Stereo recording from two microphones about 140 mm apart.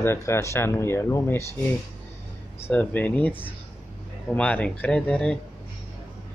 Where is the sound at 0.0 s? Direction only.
20° left (ahead or behind).